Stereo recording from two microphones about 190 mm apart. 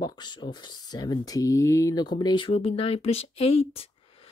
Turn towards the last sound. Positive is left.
turn(degrees=30)  # may be behind; listen again after turning